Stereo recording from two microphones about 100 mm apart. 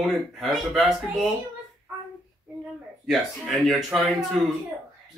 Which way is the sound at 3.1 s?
Centre (ahead or behind).